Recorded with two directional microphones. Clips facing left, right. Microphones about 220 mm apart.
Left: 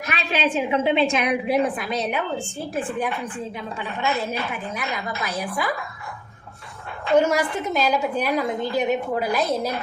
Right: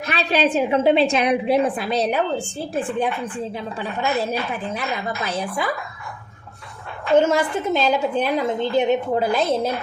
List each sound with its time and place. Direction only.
0.1 s a woman's voice: 35° right (ahead or behind)
7.3 s a woman's voice: 25° right (ahead or behind)